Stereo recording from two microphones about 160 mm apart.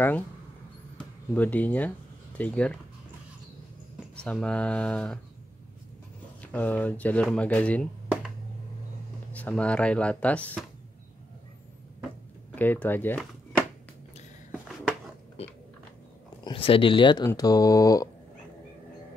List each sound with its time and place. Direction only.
0.9 s speech: 10° left (ahead or behind)
4.2 s speech: 5° left (ahead or behind)
6.4 s speech: 10° left (ahead or behind)
9.3 s speech: 10° left (ahead or behind)
12.5 s speech: 10° left (ahead or behind)
13.2 s a sound: 5° right (ahead or behind)
15.4 s a sound: 40° left (ahead or behind)
16.4 s speech: 35° left (ahead or behind)